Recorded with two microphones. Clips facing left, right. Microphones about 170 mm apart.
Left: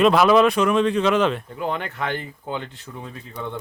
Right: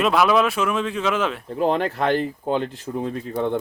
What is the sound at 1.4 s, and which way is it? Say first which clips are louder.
Speech: right 6 dB; 35° right (ahead or behind).